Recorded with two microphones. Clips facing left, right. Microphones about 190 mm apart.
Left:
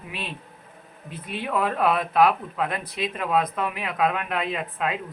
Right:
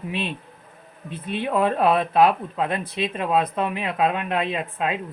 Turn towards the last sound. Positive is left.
turn(degrees=-25)  # may be behind; listen again after turning